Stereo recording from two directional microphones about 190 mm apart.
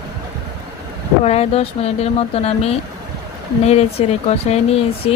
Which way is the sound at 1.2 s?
35° left (ahead or behind).